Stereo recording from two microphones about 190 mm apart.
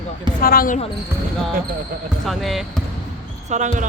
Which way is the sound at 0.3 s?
50° left (ahead or behind).